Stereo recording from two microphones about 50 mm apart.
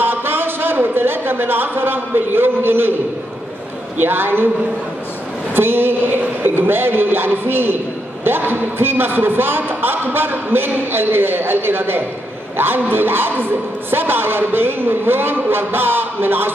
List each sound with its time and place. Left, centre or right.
0.0 s a sound: right
4.0 s a man's voice: right
5.5 s a man's voice: right